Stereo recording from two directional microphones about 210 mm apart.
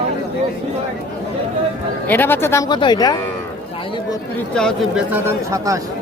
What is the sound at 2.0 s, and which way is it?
Speech, 10° left (ahead or behind).